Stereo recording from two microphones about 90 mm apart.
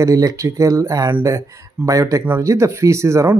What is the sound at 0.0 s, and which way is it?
Speech, 40° right (ahead or behind).